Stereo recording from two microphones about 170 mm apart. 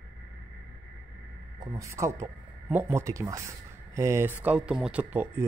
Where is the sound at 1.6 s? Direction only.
20° right (ahead or behind).